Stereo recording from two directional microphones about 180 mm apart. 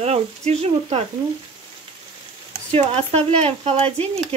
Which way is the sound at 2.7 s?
35° right (ahead or behind).